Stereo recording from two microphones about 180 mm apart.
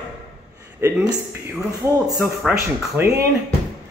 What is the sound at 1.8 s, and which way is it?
Speech, 20° right (ahead or behind).